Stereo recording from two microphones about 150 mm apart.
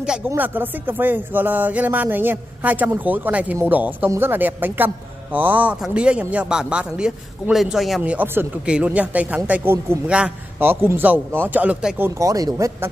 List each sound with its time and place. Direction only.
0.3 s a man's voice: 15° right (ahead or behind)
12.2 s speech: 20° right (ahead or behind)